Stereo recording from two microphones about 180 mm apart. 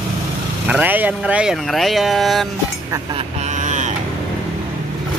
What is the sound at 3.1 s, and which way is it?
Vehicle, 40° right (ahead or behind).